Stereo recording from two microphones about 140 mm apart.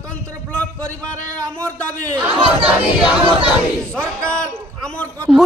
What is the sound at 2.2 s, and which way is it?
Speech, 35° right (ahead or behind).